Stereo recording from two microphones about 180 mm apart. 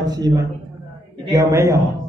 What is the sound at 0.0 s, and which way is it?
A man's voice, 20° right (ahead or behind).